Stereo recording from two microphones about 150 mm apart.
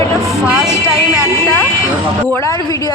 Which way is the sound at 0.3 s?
5° right (ahead or behind).